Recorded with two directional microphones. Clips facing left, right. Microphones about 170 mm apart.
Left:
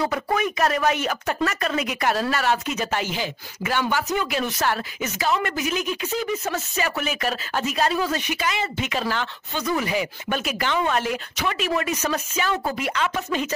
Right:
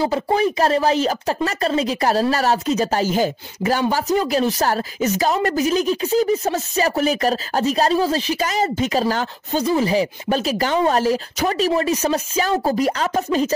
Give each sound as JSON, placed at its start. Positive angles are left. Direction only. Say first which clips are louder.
{"t": 0.0, "sound": "a woman's voice", "louder": "right 5 dB", "side_deg": -30}